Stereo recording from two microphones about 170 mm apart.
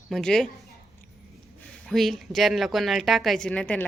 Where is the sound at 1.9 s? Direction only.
Centre (ahead or behind).